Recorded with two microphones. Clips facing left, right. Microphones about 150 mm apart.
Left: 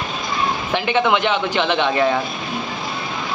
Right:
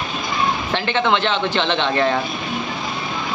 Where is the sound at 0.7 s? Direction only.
10° left (ahead or behind).